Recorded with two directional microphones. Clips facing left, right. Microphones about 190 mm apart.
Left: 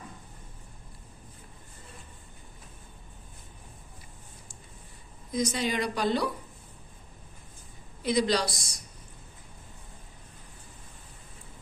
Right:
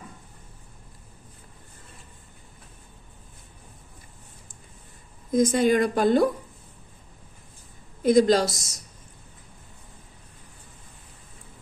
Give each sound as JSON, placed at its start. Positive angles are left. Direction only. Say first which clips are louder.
{"t": 5.3, "sound": "speech", "louder": "right 9 dB", "side_deg": -50}
{"t": 8.0, "sound": "speech", "louder": "right 8 dB", "side_deg": -50}